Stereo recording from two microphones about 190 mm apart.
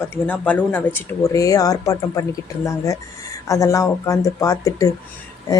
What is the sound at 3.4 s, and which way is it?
Speech, 15° left (ahead or behind).